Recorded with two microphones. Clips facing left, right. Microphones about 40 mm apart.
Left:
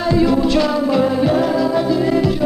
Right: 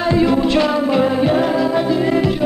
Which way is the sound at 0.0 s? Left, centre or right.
Right.